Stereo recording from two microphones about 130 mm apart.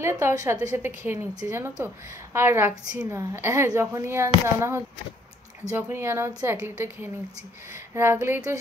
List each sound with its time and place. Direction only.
0.0 s a woman's voice: 25° right (ahead or behind)
3.1 s a woman's voice: 20° right (ahead or behind)